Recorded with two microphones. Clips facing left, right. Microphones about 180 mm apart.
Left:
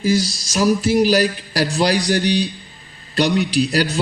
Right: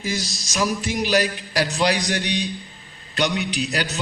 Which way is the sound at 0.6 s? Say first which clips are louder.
Left 8 dB; 35° left (ahead or behind).